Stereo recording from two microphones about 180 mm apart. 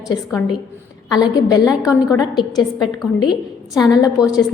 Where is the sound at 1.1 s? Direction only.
20° left (ahead or behind).